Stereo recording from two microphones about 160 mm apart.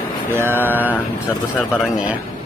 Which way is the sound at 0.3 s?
15° right (ahead or behind).